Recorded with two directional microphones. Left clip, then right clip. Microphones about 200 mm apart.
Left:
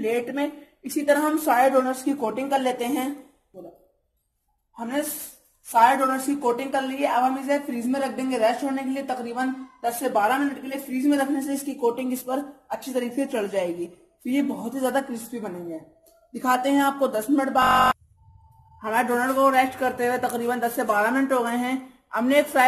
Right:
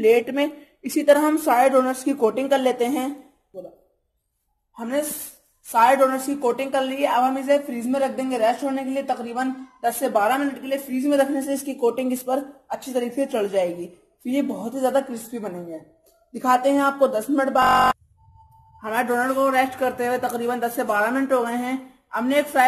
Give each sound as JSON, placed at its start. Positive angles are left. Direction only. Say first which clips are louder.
{"t": 0.0, "sound": "a woman's voice", "louder": "right 7 dB", "side_deg": -30}
{"t": 5.7, "sound": "a woman's voice", "louder": "right 2 dB", "side_deg": -30}
{"t": 18.8, "sound": "a woman's voice", "louder": "right 1 dB", "side_deg": 0}
{"t": 19.3, "sound": "speech", "louder": "left 3 dB", "side_deg": -15}
{"t": 21.5, "sound": "a woman's voice", "louder": "even", "side_deg": -5}